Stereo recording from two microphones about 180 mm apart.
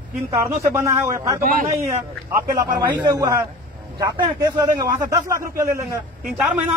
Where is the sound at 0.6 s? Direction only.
15° right (ahead or behind).